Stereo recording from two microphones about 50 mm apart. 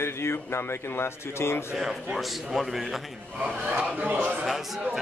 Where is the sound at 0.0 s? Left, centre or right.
Left.